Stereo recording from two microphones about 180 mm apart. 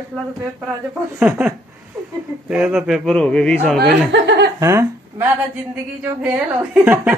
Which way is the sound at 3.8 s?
75° right (ahead or behind).